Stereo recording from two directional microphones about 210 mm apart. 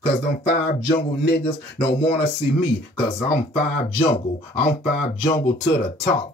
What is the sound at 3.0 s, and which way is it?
Speech, 25° left (ahead or behind).